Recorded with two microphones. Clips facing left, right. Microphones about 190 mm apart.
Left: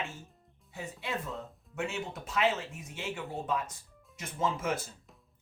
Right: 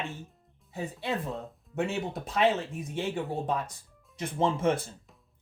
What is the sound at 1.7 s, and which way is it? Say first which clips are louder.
Speech: right 5 dB; 35° right (ahead or behind).